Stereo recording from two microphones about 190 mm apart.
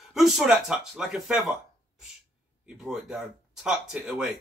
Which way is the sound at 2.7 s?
5° right (ahead or behind).